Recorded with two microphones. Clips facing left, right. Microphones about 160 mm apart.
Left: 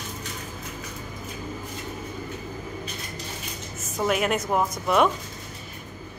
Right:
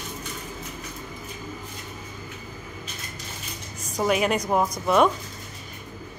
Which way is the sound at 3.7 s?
5° left (ahead or behind).